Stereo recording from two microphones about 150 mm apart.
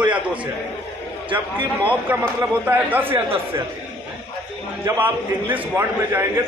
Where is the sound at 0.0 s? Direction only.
10° right (ahead or behind).